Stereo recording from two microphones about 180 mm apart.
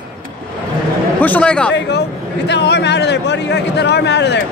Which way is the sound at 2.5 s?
70° left (ahead or behind).